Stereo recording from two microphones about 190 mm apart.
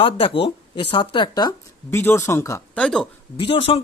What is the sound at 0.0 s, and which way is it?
Speech, 25° left (ahead or behind).